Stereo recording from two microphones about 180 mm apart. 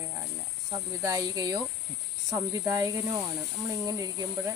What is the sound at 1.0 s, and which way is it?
Speech, 20° right (ahead or behind).